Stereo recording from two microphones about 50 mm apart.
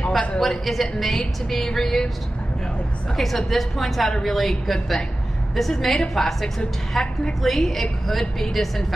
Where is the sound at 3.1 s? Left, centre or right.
Centre.